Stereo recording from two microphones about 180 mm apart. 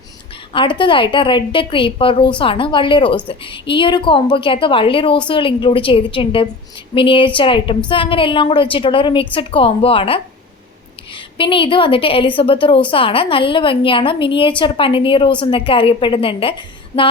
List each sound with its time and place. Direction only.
0.5 s a woman's voice: 30° left (ahead or behind)